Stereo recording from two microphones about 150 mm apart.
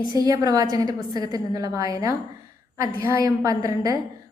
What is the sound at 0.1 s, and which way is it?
A woman's voice, 25° right (ahead or behind).